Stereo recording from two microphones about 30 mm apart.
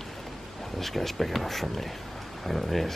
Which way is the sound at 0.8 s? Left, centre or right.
Centre.